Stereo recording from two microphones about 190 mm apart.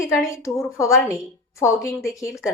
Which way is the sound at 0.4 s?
15° left (ahead or behind).